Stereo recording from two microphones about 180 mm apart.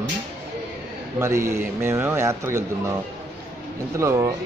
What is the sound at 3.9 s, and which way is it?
Speech, 15° right (ahead or behind).